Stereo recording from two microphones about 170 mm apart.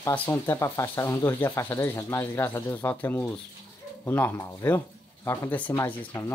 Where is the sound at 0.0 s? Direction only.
10° left (ahead or behind).